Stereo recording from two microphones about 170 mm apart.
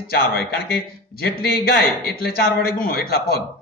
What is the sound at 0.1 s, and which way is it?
A man's voice, 65° left (ahead or behind).